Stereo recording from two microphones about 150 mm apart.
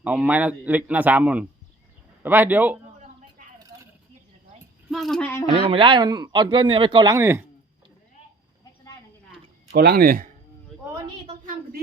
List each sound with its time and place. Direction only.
0.0 s a man's voice: 10° right (ahead or behind)
4.9 s speech: centre (ahead or behind)
5.2 s speech: 15° left (ahead or behind)
5.5 s a man's voice: 40° right (ahead or behind); by 7.4 s 20° right (ahead or behind)
9.7 s speech: 90° right